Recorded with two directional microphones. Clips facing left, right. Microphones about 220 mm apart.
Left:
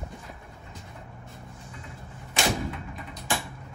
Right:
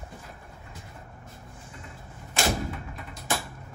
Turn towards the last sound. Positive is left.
turn(degrees=0)  # may be behind; listen again after turning